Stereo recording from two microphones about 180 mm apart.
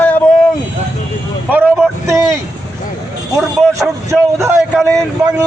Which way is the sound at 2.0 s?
15° right (ahead or behind).